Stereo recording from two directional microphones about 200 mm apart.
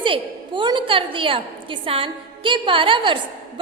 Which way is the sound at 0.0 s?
25° right (ahead or behind).